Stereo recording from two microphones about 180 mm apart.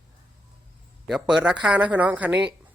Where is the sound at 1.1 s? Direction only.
5° right (ahead or behind).